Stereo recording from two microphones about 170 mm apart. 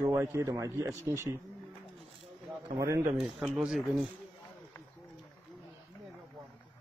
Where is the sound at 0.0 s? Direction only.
15° right (ahead or behind).